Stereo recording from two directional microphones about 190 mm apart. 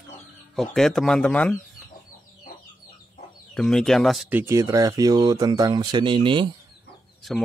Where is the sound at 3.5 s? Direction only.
5° left (ahead or behind); by 6.5 s 25° right (ahead or behind).